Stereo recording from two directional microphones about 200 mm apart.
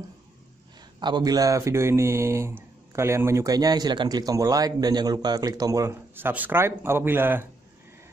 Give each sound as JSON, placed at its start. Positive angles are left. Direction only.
{"t": 0.9, "sound": "speech", "side_deg": -20}